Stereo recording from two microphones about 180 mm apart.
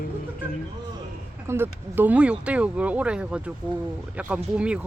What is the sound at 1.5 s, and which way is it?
Speech, 10° right (ahead or behind).